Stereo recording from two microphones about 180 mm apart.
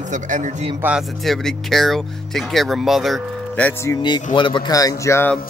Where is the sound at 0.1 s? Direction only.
45° right (ahead or behind).